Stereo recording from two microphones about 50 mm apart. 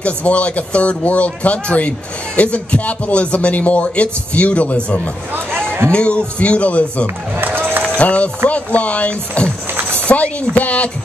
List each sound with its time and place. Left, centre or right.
0.0 s speech: left
7.3 s run: right
8.0 s speech: left